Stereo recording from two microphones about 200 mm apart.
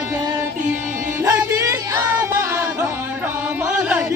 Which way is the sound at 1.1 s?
15° right (ahead or behind).